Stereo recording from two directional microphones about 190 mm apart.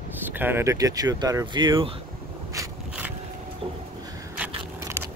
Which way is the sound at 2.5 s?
15° right (ahead or behind).